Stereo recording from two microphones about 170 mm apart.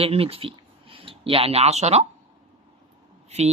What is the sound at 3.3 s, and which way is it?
Speech, 40° right (ahead or behind).